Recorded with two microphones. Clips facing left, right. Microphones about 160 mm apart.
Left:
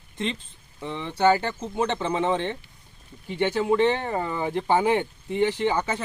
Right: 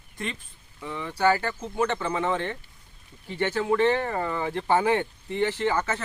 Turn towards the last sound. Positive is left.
turn(degrees=15)  # may be behind; listen again after turning